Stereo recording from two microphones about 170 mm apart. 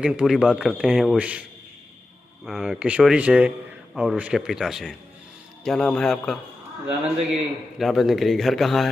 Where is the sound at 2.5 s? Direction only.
5° right (ahead or behind).